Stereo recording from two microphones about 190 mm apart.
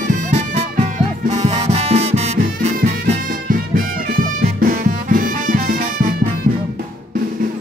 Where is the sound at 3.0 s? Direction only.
45° right (ahead or behind).